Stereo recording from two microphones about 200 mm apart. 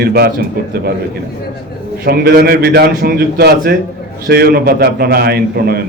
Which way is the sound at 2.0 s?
50° right (ahead or behind).